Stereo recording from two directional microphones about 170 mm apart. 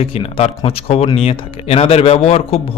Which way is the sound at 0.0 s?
35° left (ahead or behind).